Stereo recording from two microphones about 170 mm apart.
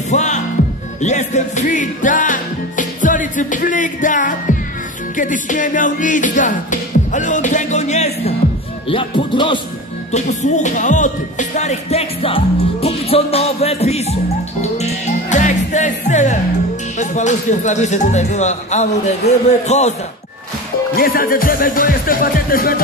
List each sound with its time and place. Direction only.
0.1 s music: 45° left (ahead or behind)
8.8 s speech: 30° left (ahead or behind)
10.1 s music: 45° left (ahead or behind)
20.9 s speech: 60° left (ahead or behind)